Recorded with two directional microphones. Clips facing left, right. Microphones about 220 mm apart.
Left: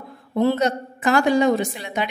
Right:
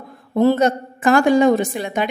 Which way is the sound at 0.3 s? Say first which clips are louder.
Right 4 dB; 45° right (ahead or behind).